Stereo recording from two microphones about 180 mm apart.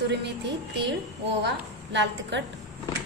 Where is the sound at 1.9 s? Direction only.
75° right (ahead or behind).